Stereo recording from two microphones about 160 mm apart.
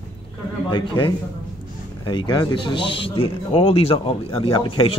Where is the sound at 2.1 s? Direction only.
30° left (ahead or behind).